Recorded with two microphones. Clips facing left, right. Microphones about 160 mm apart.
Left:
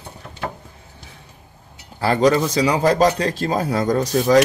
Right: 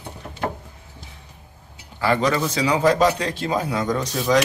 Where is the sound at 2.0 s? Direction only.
35° left (ahead or behind).